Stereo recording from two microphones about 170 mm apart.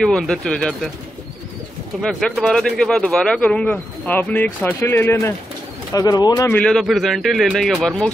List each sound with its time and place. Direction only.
0.0 s speech: 5° left (ahead or behind)
2.0 s speech: 5° left (ahead or behind)
6.6 s speech: centre (ahead or behind)